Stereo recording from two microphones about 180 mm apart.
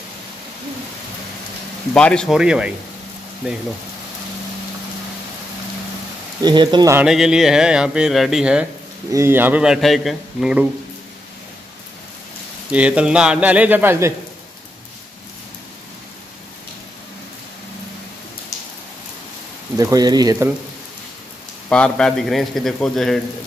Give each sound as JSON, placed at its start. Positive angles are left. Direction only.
{"t": 2.0, "sound": "speech", "side_deg": 5}
{"t": 6.4, "sound": "speech", "side_deg": -25}
{"t": 7.0, "sound": "speech", "side_deg": -5}
{"t": 12.7, "sound": "speech", "side_deg": -5}
{"t": 19.8, "sound": "speech", "side_deg": -20}
{"t": 21.6, "sound": "speech", "side_deg": 5}